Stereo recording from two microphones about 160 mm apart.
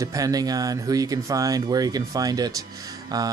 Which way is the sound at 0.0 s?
20° right (ahead or behind).